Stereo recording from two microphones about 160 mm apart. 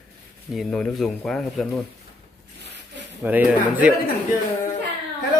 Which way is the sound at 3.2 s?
10° right (ahead or behind).